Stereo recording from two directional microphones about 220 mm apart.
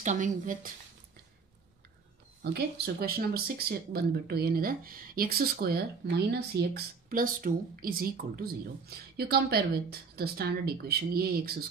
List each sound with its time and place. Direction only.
0.0 s speech: 35° right (ahead or behind)
2.4 s a woman's voice: 45° right (ahead or behind)